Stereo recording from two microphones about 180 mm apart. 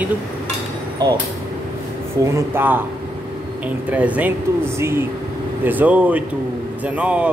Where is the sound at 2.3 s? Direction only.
10° right (ahead or behind).